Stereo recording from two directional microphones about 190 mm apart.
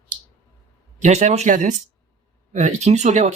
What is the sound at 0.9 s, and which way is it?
Speech, 40° right (ahead or behind).